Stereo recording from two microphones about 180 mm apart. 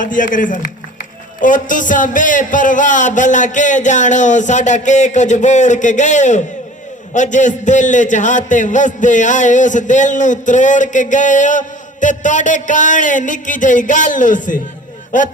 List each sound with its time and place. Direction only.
0.0 s a man's voice: 45° left (ahead or behind)